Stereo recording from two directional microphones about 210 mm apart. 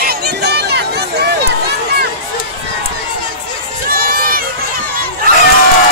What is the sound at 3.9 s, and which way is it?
Run, 45° right (ahead or behind).